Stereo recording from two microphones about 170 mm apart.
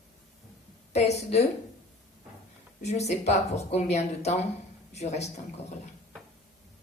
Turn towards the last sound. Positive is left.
turn(degrees=40)  # may be behind; listen again after turning